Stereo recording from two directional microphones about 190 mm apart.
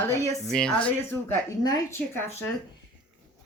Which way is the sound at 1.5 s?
15° left (ahead or behind).